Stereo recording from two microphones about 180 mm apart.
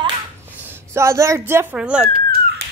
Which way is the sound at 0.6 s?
10° right (ahead or behind).